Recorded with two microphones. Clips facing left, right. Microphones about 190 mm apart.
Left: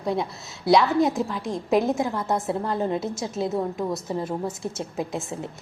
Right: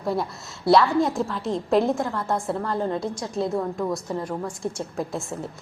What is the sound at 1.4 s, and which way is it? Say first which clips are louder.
A woman's voice: right 3 dB; 15° left (ahead or behind).